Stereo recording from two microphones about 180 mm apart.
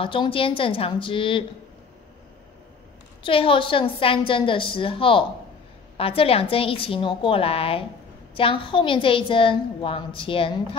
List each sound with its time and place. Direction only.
0.0 s a woman's voice: 30° left (ahead or behind)
3.3 s a woman's voice: 30° left (ahead or behind)